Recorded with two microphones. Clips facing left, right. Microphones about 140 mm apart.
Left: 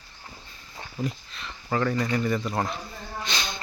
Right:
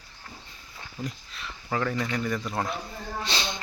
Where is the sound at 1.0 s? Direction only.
Centre (ahead or behind).